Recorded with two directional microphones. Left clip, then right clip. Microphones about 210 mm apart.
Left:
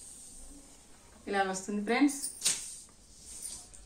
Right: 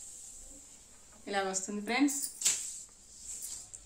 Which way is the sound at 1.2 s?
55° right (ahead or behind).